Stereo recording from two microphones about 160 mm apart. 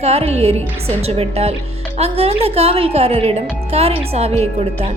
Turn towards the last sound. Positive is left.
turn(degrees=-40)  # may be behind; listen again after turning